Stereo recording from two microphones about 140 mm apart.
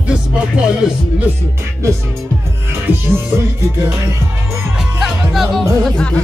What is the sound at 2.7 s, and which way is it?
Music, 15° right (ahead or behind).